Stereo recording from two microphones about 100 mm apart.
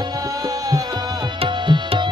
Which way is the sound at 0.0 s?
35° right (ahead or behind).